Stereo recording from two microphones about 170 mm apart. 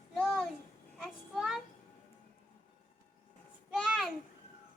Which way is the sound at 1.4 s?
Centre (ahead or behind).